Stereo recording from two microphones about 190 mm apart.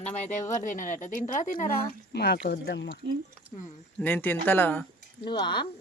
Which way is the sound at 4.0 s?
10° left (ahead or behind).